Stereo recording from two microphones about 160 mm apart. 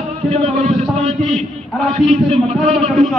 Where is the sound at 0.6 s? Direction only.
40° right (ahead or behind).